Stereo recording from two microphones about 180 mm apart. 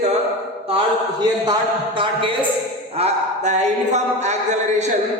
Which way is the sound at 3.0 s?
40° right (ahead or behind).